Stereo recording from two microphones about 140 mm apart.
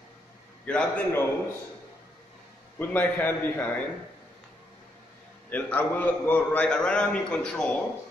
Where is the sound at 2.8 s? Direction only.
15° left (ahead or behind).